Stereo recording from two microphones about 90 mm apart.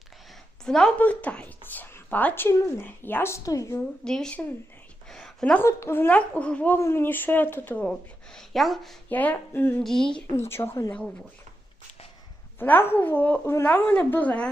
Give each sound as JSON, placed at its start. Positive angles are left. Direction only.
{"t": 0.6, "sound": "speech", "side_deg": 5}
{"t": 0.9, "sound": "speech", "side_deg": 15}
{"t": 4.0, "sound": "speech", "side_deg": 5}
{"t": 5.0, "sound": "a sound", "side_deg": 5}
{"t": 5.6, "sound": "speech", "side_deg": 30}
{"t": 6.1, "sound": "speech", "side_deg": 15}
{"t": 6.7, "sound": "speech", "side_deg": 30}
{"t": 7.9, "sound": "speech", "side_deg": 5}
{"t": 9.0, "sound": "speech", "side_deg": 20}
{"t": 9.8, "sound": "speech", "side_deg": 5}
{"t": 10.3, "sound": "speech", "side_deg": 30}
{"t": 12.5, "sound": "speech", "side_deg": 20}